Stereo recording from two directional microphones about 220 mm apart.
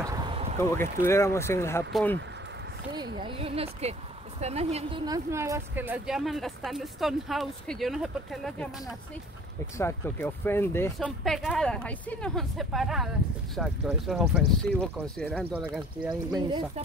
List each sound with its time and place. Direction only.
0.0 s a sound: 20° right (ahead or behind)
0.7 s speech: 10° left (ahead or behind)
1.9 s speech: centre (ahead or behind)
3.2 s speech: 25° right (ahead or behind); by 8.6 s centre (ahead or behind)
9.8 s speech: 10° left (ahead or behind); by 16.1 s 5° right (ahead or behind)
16.1 s speech: 20° right (ahead or behind)